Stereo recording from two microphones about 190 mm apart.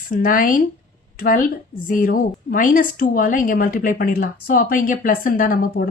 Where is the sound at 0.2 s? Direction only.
45° left (ahead or behind).